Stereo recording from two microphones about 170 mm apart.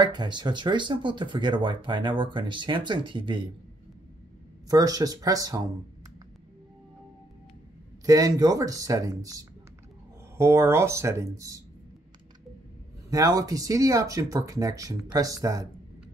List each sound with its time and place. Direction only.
0.0 s speech: 25° right (ahead or behind)
4.6 s speech: 20° right (ahead or behind)
8.0 s speech: 20° right (ahead or behind)
13.1 s speech: 20° right (ahead or behind)